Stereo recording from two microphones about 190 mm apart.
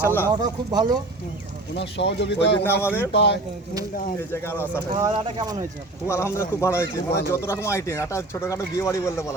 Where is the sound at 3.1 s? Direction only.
65° left (ahead or behind).